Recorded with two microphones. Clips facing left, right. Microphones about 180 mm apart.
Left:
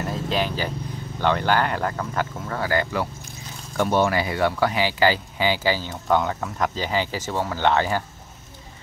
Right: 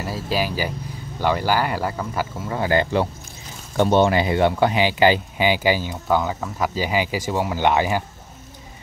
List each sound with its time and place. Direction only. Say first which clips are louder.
0.0 s speech: right 1 dB; 5° right (ahead or behind)
6.0 s speech: even; 5° right (ahead or behind)